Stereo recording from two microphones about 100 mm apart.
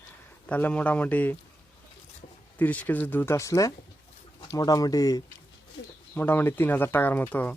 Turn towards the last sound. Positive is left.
turn(degrees=15)  # may be behind; listen again after turning